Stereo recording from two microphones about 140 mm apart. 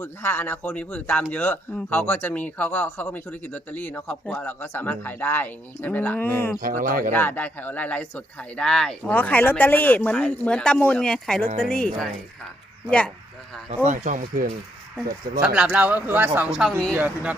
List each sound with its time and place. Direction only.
0.0 s speech: 15° left (ahead or behind)
6.6 s speech: 85° right
7.1 s speech: 15° left (ahead or behind)
13.8 s speech: 60° right (ahead or behind)
15.4 s speech: 10° right (ahead or behind)